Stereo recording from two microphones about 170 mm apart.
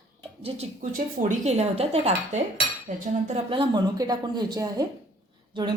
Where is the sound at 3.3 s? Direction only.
30° right (ahead or behind).